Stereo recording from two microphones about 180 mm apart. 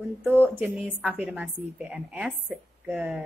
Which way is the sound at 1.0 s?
10° right (ahead or behind).